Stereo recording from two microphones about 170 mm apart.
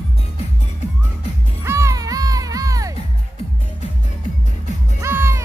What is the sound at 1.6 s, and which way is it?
Music, 15° right (ahead or behind).